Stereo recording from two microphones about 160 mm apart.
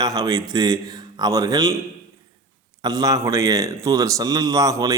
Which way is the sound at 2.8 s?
25° right (ahead or behind).